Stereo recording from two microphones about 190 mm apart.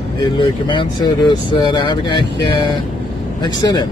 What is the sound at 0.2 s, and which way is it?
Speech, 25° left (ahead or behind).